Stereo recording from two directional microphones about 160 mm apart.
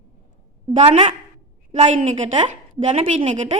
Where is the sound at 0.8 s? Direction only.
35° right (ahead or behind).